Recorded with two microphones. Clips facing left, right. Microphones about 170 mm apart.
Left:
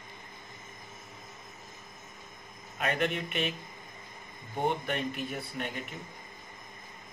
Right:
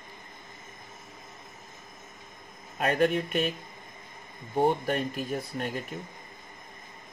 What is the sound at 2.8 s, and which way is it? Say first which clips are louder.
Speech: right 6 dB; 40° right (ahead or behind).